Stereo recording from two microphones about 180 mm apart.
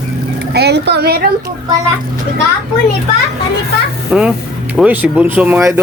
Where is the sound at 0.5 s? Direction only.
65° right (ahead or behind).